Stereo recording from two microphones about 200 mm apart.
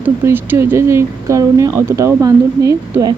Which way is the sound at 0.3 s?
15° right (ahead or behind).